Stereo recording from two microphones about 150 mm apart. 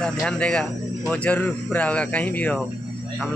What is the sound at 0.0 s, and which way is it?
Speech, 5° left (ahead or behind).